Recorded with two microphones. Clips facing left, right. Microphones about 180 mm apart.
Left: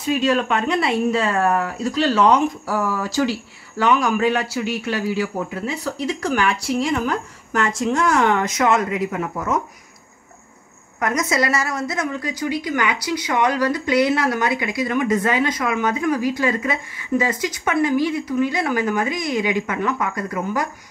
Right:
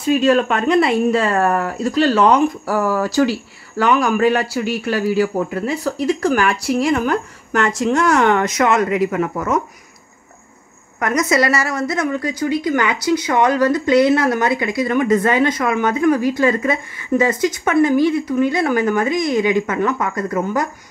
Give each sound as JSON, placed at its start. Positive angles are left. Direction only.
{"t": 0.2, "sound": "speech", "side_deg": -50}
{"t": 11.0, "sound": "speech", "side_deg": -70}